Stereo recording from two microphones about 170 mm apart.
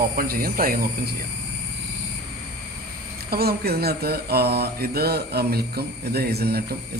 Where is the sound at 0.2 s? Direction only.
60° right (ahead or behind).